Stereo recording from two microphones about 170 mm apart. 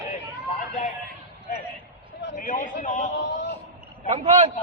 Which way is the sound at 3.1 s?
90° left.